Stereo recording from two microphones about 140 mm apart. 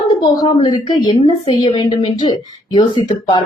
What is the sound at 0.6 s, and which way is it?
Speech, 30° left (ahead or behind).